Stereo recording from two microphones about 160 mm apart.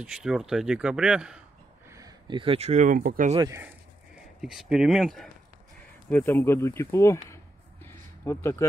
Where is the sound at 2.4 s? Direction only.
35° right (ahead or behind); by 3.3 s 60° right (ahead or behind).